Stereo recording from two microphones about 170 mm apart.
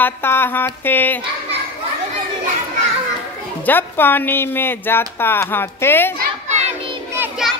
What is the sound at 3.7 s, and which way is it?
Speech, 10° left (ahead or behind).